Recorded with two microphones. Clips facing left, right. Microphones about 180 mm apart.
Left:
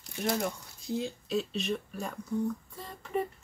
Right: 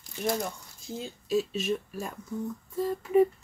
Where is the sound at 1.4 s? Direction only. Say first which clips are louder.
Right 1 dB; 5° right (ahead or behind).